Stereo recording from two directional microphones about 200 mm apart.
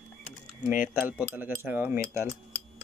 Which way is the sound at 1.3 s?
10° right (ahead or behind).